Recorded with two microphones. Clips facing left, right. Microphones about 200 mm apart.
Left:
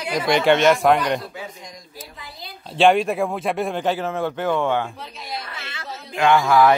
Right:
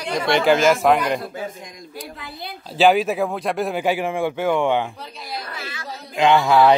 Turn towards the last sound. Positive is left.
turn(degrees=-20)  # may be behind; listen again after turning